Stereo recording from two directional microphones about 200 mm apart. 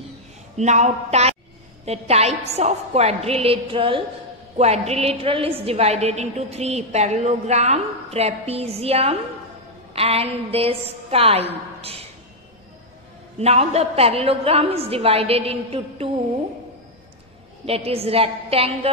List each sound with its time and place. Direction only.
0.6 s a woman's voice: 35° right (ahead or behind)
13.4 s a woman's voice: 30° right (ahead or behind)
17.6 s a woman's voice: 30° right (ahead or behind)